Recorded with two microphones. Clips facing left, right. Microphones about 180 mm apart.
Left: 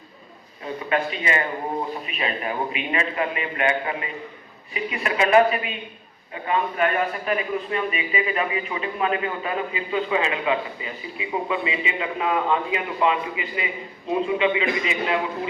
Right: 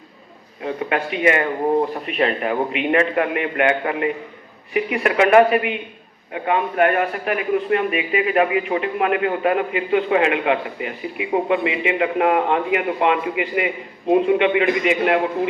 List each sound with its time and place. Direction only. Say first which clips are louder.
0.6 s a man's voice: right 2 dB; 60° right (ahead or behind)